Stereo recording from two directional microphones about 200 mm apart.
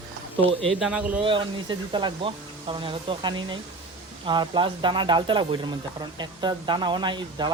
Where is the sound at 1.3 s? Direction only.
25° right (ahead or behind).